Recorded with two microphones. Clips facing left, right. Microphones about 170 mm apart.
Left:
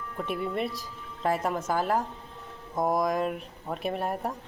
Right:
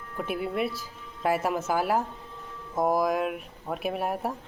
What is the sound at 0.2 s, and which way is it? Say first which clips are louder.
Speech: right 1 dB; 5° right (ahead or behind).